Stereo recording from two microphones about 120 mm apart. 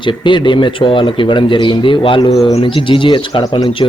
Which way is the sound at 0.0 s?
40° left (ahead or behind).